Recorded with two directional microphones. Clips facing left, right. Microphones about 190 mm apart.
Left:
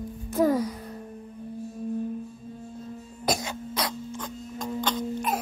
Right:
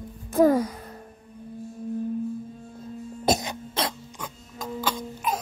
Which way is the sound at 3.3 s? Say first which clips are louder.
Right 3 dB; 20° right (ahead or behind).